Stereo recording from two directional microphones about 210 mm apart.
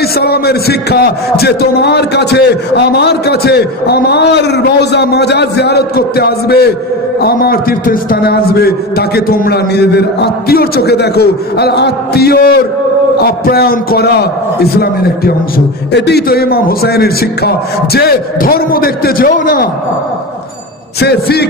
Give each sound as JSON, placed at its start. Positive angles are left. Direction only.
{"t": 0.2, "sound": "a man's voice", "side_deg": 50}
{"t": 21.0, "sound": "a man's voice", "side_deg": 50}